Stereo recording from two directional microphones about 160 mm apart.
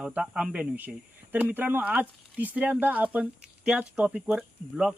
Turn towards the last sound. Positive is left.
turn(degrees=-5)  # may be behind; listen again after turning